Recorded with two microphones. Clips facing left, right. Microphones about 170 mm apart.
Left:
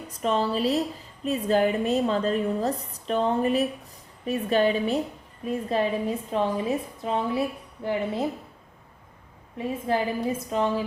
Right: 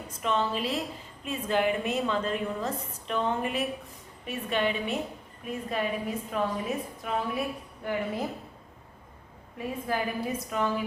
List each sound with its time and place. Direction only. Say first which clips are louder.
0.1 s a woman's voice: left 4 dB; 35° left (ahead or behind)
9.6 s a woman's voice: left 5 dB; 25° left (ahead or behind)